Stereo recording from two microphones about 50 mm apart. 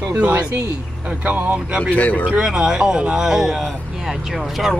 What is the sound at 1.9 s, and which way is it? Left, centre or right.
Speech, left.